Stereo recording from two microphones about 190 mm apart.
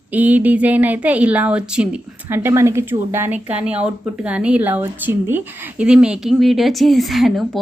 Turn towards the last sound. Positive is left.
turn(degrees=0)  # may be behind; listen again after turning